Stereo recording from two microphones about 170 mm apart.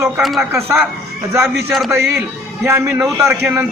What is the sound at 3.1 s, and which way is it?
Speech, 5° right (ahead or behind).